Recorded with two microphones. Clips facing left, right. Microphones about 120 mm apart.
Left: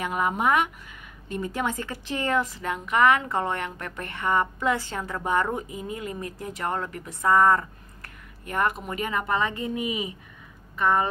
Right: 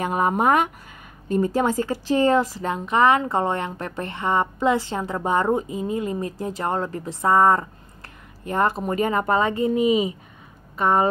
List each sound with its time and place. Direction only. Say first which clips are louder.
0.0 s a woman's voice: right 4 dB; 40° right (ahead or behind)